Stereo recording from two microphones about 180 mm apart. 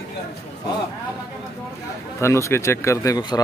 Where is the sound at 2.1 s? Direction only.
15° left (ahead or behind).